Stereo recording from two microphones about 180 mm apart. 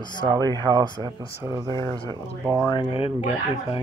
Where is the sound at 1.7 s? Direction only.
20° left (ahead or behind).